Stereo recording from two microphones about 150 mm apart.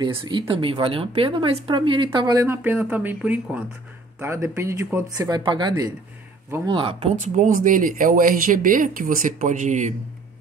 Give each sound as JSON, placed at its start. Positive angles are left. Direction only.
{"t": 0.0, "sound": "speech", "side_deg": -30}
{"t": 2.4, "sound": "speech", "side_deg": -15}